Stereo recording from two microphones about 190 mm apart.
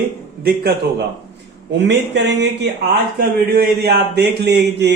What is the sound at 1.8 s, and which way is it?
Speech, 65° right (ahead or behind).